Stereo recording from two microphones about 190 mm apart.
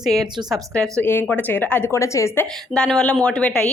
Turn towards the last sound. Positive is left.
turn(degrees=5)  # may be behind; listen again after turning